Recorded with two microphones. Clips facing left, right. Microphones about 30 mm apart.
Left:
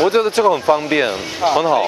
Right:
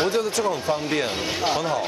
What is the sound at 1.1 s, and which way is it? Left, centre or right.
Speech, centre.